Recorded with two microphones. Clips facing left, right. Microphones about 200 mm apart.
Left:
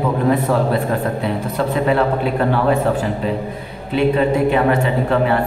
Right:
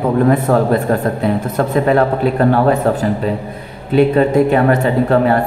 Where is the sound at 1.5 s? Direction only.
45° right (ahead or behind).